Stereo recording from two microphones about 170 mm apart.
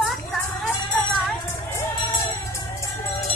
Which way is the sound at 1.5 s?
20° left (ahead or behind).